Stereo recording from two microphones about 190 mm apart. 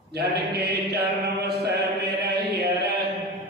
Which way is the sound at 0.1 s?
60° right (ahead or behind).